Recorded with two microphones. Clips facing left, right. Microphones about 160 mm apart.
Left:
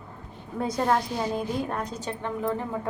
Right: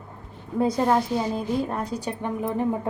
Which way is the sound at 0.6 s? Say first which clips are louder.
Right 4 dB; 10° right (ahead or behind).